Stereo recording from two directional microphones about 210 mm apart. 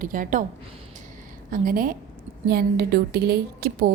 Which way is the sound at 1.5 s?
40° right (ahead or behind).